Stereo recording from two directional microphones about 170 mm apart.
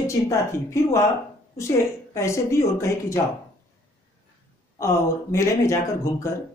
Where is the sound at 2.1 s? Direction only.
15° left (ahead or behind).